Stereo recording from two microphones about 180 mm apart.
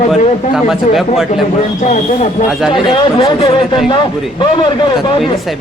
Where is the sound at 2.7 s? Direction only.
30° left (ahead or behind).